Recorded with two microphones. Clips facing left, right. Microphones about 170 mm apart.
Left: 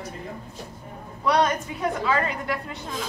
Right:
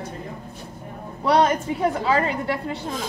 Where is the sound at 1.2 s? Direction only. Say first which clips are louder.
Right 3 dB; 30° right (ahead or behind).